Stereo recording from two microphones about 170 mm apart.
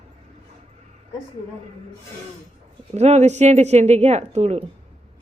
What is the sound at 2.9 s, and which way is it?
A woman's voice, 40° right (ahead or behind).